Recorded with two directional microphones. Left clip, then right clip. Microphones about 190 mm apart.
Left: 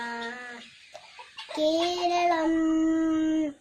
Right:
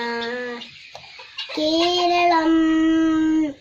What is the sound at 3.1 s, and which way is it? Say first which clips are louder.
Dog: right 7 dB; 15° right (ahead or behind).